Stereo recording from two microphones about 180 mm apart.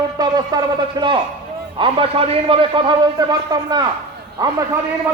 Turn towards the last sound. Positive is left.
turn(degrees=-20)  # may be behind; listen again after turning